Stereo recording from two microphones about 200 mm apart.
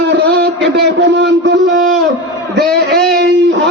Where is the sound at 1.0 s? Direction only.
60° right (ahead or behind).